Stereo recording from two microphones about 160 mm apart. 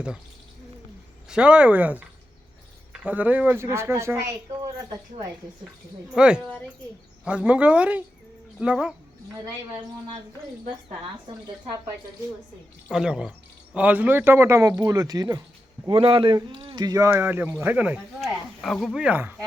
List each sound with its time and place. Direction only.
1.3 s speech: 5° right (ahead or behind)
6.1 s speech: 5° right (ahead or behind)
12.9 s speech: 5° right (ahead or behind)
18.6 s speech: 5° left (ahead or behind)
19.0 s speech: 10° right (ahead or behind)